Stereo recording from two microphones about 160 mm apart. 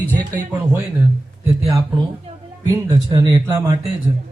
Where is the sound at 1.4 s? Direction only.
20° right (ahead or behind).